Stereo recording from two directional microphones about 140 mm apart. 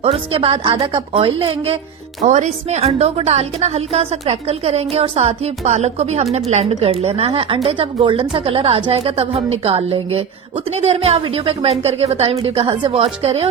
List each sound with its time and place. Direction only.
0.0 s a woman's voice: 40° right (ahead or behind)
2.2 s a woman's voice: 55° right (ahead or behind)